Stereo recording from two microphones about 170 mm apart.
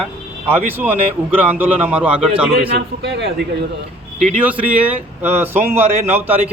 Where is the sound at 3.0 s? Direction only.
85° right.